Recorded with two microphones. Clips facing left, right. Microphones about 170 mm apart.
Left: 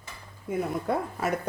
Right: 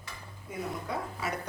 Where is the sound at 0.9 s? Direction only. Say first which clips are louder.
Left 7 dB; 50° left (ahead or behind).